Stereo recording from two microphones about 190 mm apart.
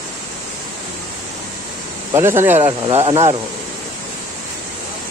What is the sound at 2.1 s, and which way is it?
Speech, 15° right (ahead or behind).